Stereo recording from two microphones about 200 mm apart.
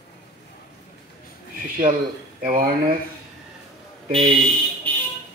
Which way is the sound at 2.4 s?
45° right (ahead or behind).